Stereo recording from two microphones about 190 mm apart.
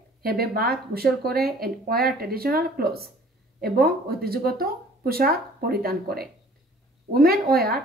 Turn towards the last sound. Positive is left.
turn(degrees=-55)  # may be behind; listen again after turning